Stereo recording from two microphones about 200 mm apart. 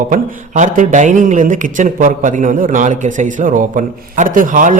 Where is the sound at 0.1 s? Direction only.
40° right (ahead or behind).